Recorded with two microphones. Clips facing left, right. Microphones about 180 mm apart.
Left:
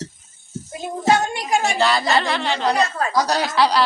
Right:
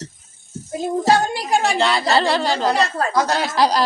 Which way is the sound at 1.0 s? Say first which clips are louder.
Left 1 dB; 35° right (ahead or behind).